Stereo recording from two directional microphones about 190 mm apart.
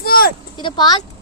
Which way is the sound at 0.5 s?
25° left (ahead or behind).